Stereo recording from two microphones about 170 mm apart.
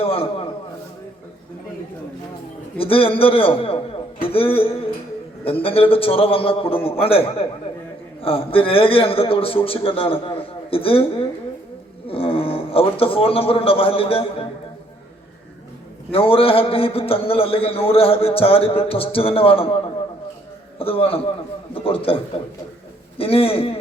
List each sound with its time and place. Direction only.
0.0 s a man's voice: 35° left (ahead or behind)
2.7 s a man's voice: 35° left (ahead or behind)
16.1 s a man's voice: 35° left (ahead or behind)